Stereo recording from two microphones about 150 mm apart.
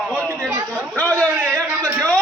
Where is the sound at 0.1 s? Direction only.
Centre (ahead or behind).